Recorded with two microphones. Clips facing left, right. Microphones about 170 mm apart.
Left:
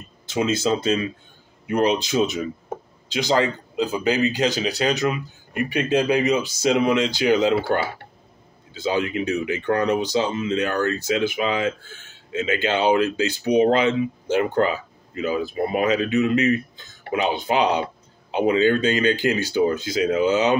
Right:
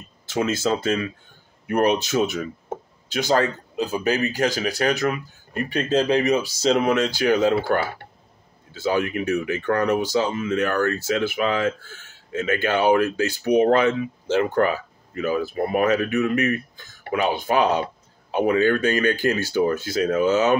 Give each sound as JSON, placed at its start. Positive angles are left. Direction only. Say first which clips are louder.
{"t": 0.3, "sound": "speech", "louder": "left 1 dB", "side_deg": 20}